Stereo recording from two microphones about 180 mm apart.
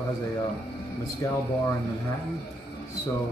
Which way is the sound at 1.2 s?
20° left (ahead or behind).